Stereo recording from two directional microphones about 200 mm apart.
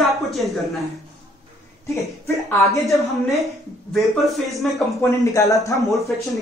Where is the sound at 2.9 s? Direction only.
Centre (ahead or behind).